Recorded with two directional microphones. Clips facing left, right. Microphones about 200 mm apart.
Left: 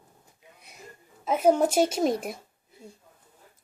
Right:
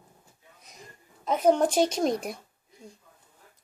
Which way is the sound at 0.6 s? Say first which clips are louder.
Right 1 dB; 10° left (ahead or behind).